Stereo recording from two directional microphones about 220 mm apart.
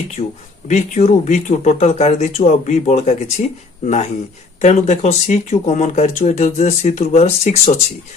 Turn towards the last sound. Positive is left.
turn(degrees=30)  # may be behind; listen again after turning